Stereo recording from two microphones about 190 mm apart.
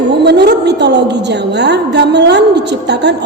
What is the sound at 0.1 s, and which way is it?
A woman's voice, 60° right (ahead or behind).